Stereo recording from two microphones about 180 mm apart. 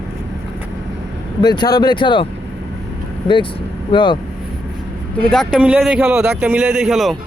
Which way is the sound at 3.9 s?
25° left (ahead or behind).